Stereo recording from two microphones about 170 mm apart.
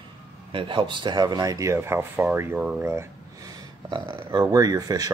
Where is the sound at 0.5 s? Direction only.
30° right (ahead or behind).